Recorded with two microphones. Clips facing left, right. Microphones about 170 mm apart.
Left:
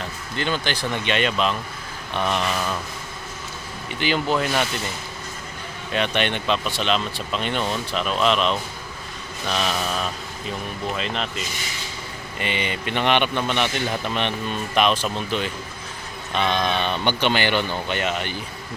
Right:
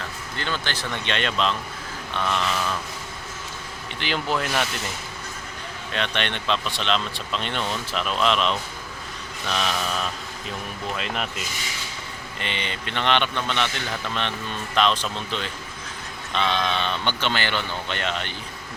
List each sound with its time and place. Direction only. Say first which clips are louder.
0.0 s a man's voice: left 4 dB; 15° left (ahead or behind)
4.0 s speech: left 4 dB; centre (ahead or behind)
5.9 s speech: left 5 dB; 10° left (ahead or behind)
12.4 s a man's voice: left 5 dB; 10° left (ahead or behind)